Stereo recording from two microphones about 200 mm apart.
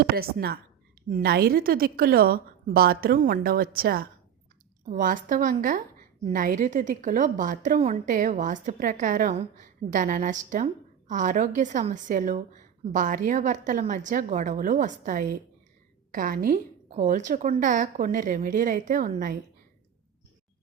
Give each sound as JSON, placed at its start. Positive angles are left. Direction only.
{"t": 0.0, "sound": "a woman's voice", "side_deg": -50}